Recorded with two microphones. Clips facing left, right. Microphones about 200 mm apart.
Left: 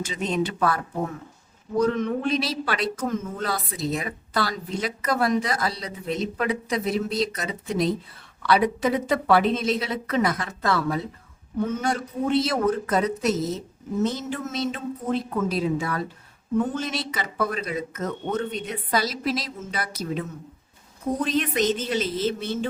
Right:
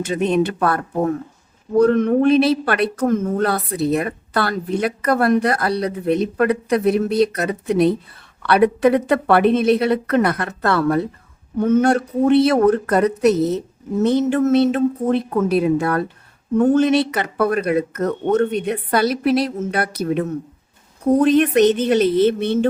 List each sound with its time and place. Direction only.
0.0 s speech: 60° right (ahead or behind)
14.8 s speech: 50° right (ahead or behind)